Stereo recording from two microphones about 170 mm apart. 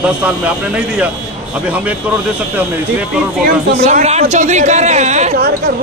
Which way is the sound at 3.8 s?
40° right (ahead or behind).